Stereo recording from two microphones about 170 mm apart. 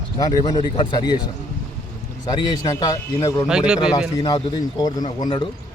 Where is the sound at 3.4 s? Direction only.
5° right (ahead or behind).